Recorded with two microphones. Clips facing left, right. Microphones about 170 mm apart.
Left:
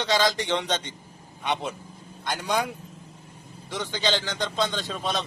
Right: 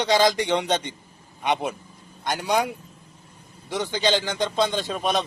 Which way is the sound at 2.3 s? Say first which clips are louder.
Right 3 dB; 15° right (ahead or behind).